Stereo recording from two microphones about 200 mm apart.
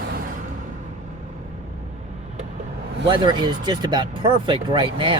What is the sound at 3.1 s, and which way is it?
Speech, 25° right (ahead or behind).